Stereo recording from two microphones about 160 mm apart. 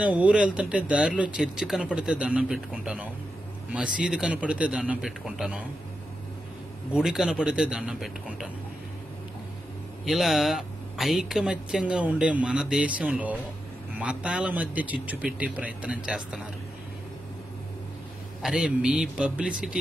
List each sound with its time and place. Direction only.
0.0 s speech: 10° right (ahead or behind)
6.9 s speech: 5° right (ahead or behind)
10.0 s speech: centre (ahead or behind)
18.4 s speech: 5° right (ahead or behind)